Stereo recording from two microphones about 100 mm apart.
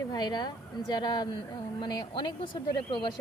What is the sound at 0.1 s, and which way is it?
Speech, 45° left (ahead or behind).